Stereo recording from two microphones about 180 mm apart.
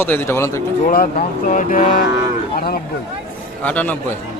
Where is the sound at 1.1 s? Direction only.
45° left (ahead or behind).